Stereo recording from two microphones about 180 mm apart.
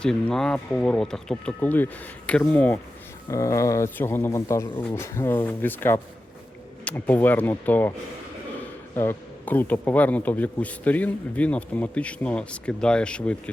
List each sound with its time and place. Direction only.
0.0 s a man's voice: 5° left (ahead or behind)
9.0 s a man's voice: 10° left (ahead or behind)